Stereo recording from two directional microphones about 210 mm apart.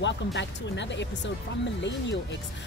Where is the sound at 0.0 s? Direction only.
55° left (ahead or behind).